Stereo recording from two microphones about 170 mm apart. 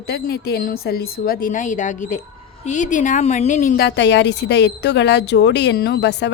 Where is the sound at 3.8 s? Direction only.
90° left.